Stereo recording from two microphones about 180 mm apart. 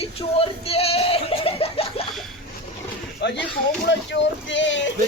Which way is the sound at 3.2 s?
70° left (ahead or behind).